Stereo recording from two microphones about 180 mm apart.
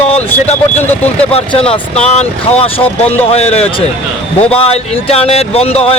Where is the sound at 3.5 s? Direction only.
35° left (ahead or behind).